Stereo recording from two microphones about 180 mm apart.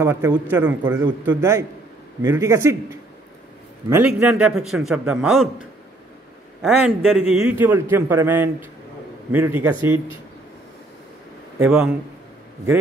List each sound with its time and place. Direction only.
0.0 s a man's voice: 15° right (ahead or behind)
6.6 s a man's voice: centre (ahead or behind)
7.4 s a man's voice: 10° right (ahead or behind)
11.5 s a man's voice: 10° right (ahead or behind)